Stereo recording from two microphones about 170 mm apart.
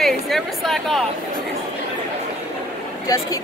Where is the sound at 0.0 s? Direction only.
Centre (ahead or behind).